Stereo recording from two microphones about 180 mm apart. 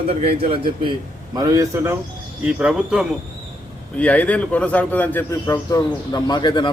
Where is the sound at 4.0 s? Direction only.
10° left (ahead or behind).